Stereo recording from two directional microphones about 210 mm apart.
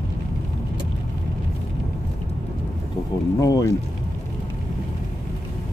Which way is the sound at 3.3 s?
15° left (ahead or behind).